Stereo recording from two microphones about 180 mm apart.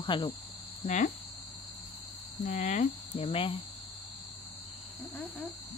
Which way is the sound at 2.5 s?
40° left (ahead or behind).